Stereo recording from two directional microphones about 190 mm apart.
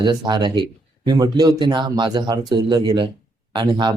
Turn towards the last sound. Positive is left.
turn(degrees=-25)  # may be behind; listen again after turning